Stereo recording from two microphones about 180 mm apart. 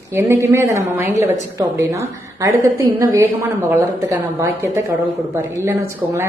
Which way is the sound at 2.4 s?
15° right (ahead or behind).